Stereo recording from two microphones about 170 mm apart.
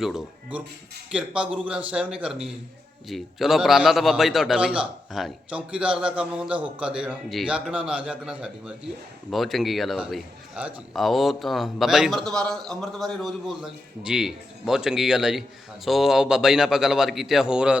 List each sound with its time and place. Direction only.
0.0 s a man's voice: 5° right (ahead or behind)